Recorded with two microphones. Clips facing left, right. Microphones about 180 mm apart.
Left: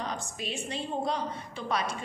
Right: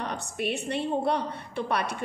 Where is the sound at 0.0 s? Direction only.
65° right (ahead or behind).